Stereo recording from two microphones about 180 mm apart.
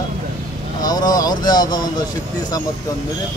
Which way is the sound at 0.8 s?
20° left (ahead or behind).